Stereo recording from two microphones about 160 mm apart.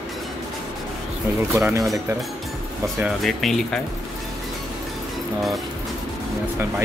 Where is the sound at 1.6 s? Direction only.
20° right (ahead or behind).